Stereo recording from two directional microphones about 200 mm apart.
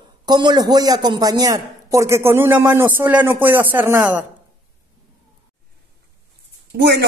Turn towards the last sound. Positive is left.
turn(degrees=-55)  # may be behind; listen again after turning